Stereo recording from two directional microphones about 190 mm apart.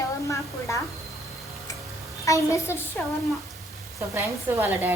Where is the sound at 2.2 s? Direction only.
15° left (ahead or behind).